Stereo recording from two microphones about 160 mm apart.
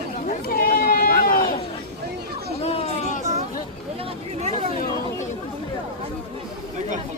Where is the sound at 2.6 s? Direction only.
40° left (ahead or behind).